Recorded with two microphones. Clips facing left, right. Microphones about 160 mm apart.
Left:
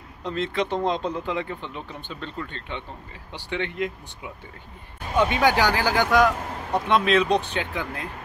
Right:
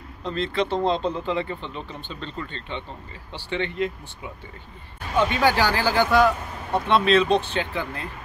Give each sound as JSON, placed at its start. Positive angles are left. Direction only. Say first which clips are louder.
{"t": 0.2, "sound": "speech", "louder": "right 1 dB", "side_deg": 15}